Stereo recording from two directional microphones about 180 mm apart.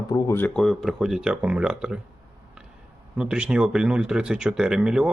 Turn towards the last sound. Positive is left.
turn(degrees=-5)  # may be behind; listen again after turning